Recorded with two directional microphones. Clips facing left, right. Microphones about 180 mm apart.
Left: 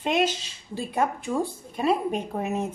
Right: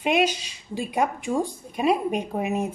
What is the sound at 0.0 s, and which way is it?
A woman's voice, 15° right (ahead or behind).